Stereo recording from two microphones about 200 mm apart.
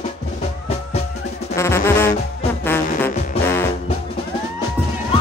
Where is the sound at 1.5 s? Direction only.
15° left (ahead or behind).